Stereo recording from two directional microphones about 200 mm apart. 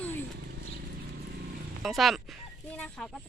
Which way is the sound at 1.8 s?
Centre (ahead or behind).